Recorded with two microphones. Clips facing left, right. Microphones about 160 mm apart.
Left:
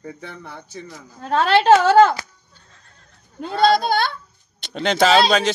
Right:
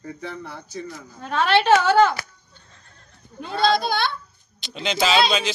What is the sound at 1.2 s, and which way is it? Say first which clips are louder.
Speech: left 4 dB; 35° left (ahead or behind).